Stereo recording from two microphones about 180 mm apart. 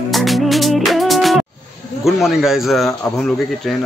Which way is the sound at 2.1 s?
5° right (ahead or behind).